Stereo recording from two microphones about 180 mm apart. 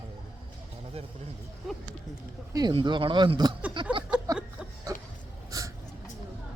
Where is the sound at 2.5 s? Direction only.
25° right (ahead or behind).